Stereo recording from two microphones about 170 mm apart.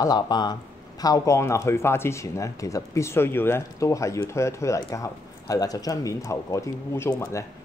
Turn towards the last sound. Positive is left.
turn(degrees=15)  # may be behind; listen again after turning